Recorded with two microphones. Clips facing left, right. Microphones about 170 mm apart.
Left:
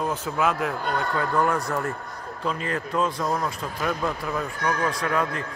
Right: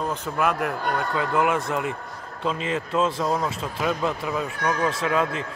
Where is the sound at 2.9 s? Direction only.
25° right (ahead or behind).